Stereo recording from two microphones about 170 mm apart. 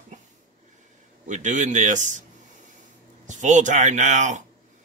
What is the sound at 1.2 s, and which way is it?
Speech, 45° right (ahead or behind).